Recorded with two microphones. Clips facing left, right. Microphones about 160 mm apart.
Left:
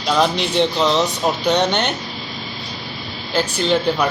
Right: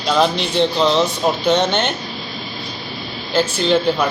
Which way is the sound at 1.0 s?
15° left (ahead or behind).